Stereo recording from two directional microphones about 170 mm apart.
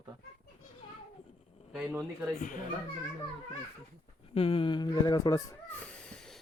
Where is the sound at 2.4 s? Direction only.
50° left (ahead or behind).